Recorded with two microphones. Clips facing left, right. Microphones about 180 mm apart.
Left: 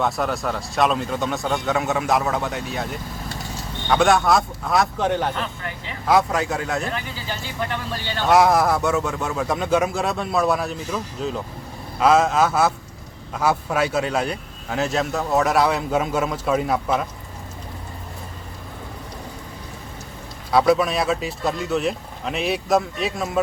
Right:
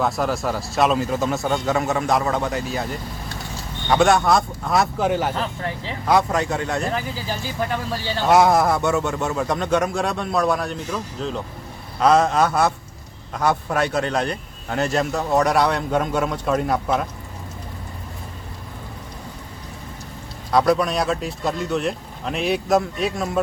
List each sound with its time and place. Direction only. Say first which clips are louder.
0.0 s speech: right 1 dB; centre (ahead or behind)
5.3 s speech: right 3 dB; 35° right (ahead or behind)
6.1 s speech: even; centre (ahead or behind)
8.2 s speech: right 1 dB; centre (ahead or behind)
20.5 s speech: left 1 dB; 5° left (ahead or behind)